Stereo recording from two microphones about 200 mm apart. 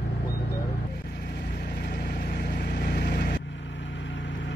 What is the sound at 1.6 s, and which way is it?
Vehicle, 55° left (ahead or behind).